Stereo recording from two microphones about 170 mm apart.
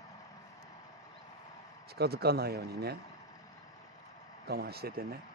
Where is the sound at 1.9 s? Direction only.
70° right (ahead or behind).